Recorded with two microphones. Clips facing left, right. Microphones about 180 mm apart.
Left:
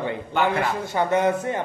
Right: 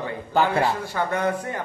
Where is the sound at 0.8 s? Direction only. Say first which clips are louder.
Left 4 dB; 20° left (ahead or behind).